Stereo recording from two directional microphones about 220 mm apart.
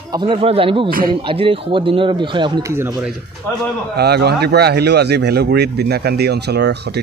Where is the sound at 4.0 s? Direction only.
45° right (ahead or behind).